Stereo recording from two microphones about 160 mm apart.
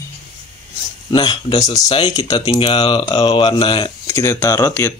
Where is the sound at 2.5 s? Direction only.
35° left (ahead or behind).